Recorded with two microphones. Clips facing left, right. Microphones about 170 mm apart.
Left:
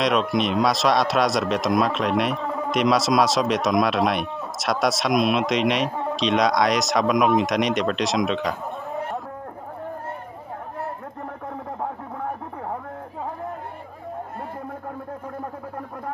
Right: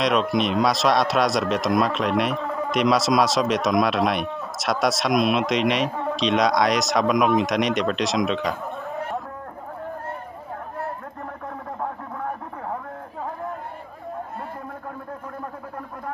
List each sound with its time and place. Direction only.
0.0 s speech: centre (ahead or behind)